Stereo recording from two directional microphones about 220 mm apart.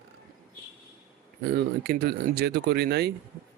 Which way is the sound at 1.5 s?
50° right (ahead or behind).